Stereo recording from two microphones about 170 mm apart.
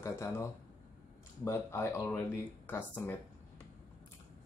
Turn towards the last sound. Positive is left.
turn(degrees=10)  # may be behind; listen again after turning